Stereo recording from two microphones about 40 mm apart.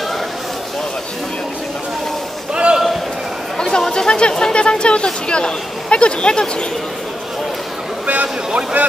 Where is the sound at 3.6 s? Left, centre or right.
Centre.